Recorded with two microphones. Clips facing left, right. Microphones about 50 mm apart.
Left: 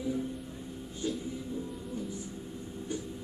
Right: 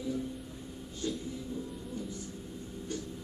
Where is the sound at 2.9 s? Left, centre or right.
Centre.